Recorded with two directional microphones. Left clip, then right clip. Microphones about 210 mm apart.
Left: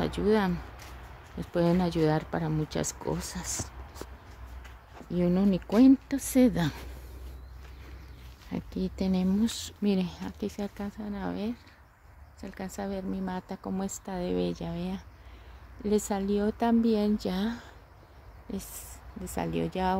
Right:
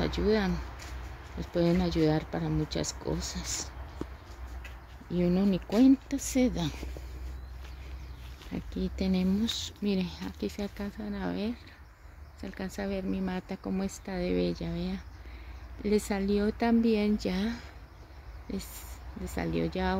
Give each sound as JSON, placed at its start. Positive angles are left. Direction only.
{"t": 0.0, "sound": "speech", "side_deg": 15}
{"t": 5.1, "sound": "speech", "side_deg": 15}
{"t": 8.5, "sound": "speech", "side_deg": 20}
{"t": 19.3, "sound": "speech", "side_deg": 10}